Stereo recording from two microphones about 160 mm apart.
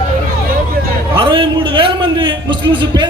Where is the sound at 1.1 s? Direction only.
30° right (ahead or behind).